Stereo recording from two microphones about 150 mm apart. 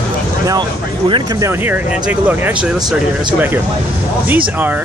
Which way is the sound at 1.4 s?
15° right (ahead or behind).